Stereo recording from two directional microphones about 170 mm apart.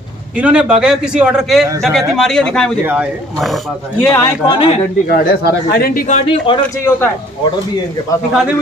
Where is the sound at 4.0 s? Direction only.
15° left (ahead or behind).